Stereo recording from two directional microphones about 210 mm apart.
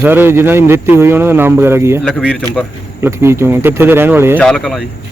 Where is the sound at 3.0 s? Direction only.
10° right (ahead or behind).